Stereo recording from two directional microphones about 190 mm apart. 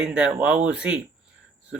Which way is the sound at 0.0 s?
5° right (ahead or behind).